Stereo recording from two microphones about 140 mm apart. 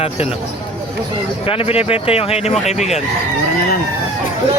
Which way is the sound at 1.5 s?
45° left (ahead or behind).